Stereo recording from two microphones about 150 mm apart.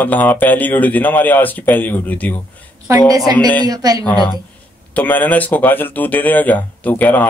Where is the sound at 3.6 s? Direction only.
25° right (ahead or behind).